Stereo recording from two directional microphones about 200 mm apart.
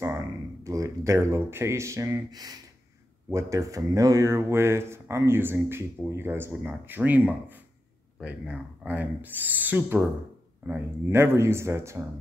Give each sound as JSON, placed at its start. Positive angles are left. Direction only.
{"t": 0.7, "sound": "speech", "side_deg": -15}